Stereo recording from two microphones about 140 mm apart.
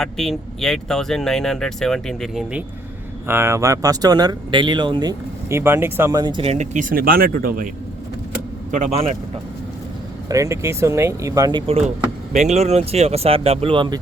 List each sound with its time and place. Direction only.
0.0 s speech: 5° left (ahead or behind)
3.2 s speech: 20° right (ahead or behind)
5.5 s speech: 20° right (ahead or behind)
6.4 s speech: 55° right (ahead or behind); by 7.7 s 90° right
8.7 s speech: 50° right (ahead or behind)
10.2 s speech: 20° right (ahead or behind)
11.6 s speech: 45° right (ahead or behind)
12.3 s speech: 55° right (ahead or behind); by 14.0 s 35° right (ahead or behind)